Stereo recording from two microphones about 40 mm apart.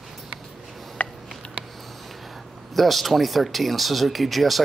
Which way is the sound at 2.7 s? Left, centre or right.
Centre.